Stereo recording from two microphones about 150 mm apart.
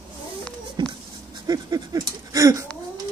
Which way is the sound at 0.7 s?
30° right (ahead or behind).